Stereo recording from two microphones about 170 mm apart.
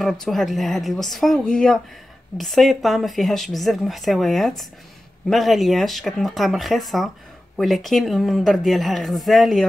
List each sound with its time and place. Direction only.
0.0 s speech: centre (ahead or behind)